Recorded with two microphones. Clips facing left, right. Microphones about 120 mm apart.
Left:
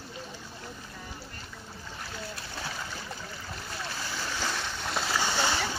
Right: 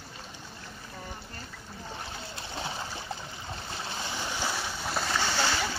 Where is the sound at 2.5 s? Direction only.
25° right (ahead or behind).